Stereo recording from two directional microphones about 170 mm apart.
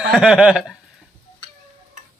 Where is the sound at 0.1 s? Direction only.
5° right (ahead or behind).